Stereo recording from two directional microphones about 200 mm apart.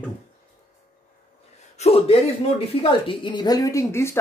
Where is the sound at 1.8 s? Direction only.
30° left (ahead or behind); by 4.2 s 15° left (ahead or behind).